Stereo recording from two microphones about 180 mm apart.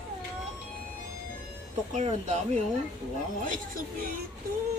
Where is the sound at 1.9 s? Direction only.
40° right (ahead or behind).